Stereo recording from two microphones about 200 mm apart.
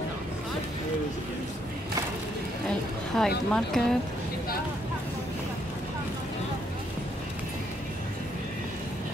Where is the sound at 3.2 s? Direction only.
Centre (ahead or behind).